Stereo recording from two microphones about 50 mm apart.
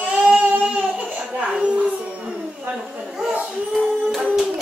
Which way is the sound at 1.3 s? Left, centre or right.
Centre.